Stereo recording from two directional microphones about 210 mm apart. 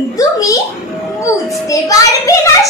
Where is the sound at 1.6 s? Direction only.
15° left (ahead or behind).